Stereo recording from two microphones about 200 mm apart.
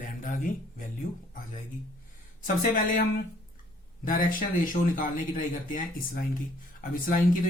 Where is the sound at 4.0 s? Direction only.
40° left (ahead or behind).